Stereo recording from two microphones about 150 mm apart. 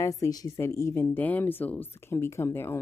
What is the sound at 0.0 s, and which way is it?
Speech, 20° left (ahead or behind).